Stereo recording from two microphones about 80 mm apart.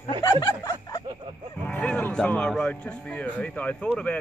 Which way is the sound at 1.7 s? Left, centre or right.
Centre.